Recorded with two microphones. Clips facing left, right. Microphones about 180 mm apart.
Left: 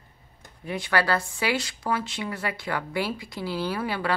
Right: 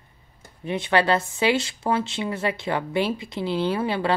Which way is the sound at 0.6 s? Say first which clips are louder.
Right 4 dB; 25° right (ahead or behind).